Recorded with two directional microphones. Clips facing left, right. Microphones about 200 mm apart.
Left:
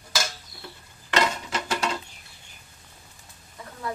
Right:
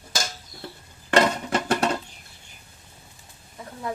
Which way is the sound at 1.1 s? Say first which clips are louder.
Right 5 dB; 55° right (ahead or behind).